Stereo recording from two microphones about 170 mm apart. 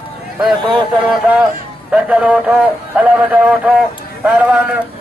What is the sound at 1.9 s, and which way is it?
A man's voice, 5° right (ahead or behind).